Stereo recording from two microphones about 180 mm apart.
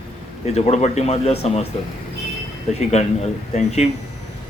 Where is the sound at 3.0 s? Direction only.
35° left (ahead or behind).